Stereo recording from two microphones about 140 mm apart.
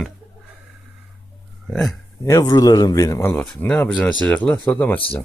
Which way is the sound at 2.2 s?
25° left (ahead or behind).